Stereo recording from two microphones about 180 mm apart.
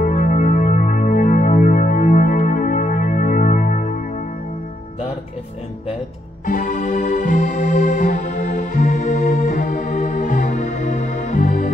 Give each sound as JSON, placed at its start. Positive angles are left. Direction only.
{"t": 0.0, "sound": "music", "side_deg": 50}
{"t": 6.4, "sound": "music", "side_deg": 45}